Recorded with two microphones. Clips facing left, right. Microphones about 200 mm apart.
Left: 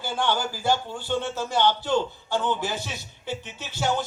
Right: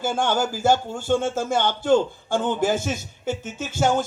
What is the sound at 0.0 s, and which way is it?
Speech, 45° right (ahead or behind).